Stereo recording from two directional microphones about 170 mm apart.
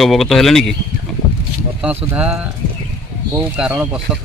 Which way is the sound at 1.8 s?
10° right (ahead or behind).